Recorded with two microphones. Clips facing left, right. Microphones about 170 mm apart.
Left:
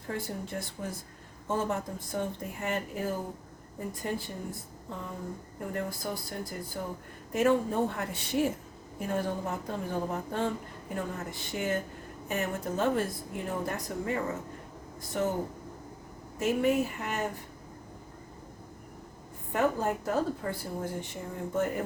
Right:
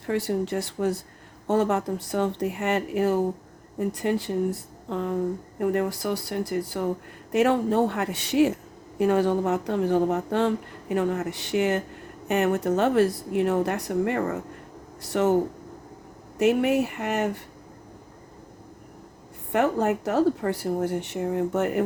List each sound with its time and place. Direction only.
0.1 s speech: 80° right
16.4 s speech: 70° right (ahead or behind)
19.5 s speech: 75° right (ahead or behind)